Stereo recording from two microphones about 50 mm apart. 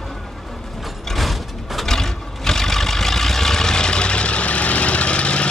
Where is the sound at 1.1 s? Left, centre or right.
Centre.